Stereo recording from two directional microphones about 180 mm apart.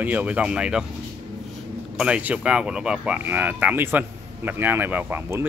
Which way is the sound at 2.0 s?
5° right (ahead or behind).